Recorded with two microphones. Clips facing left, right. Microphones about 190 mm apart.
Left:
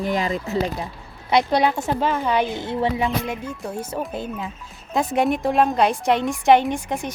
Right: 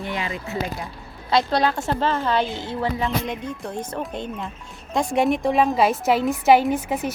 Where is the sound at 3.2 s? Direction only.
5° left (ahead or behind).